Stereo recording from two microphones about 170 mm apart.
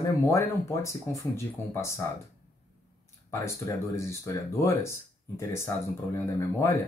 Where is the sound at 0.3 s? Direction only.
15° left (ahead or behind).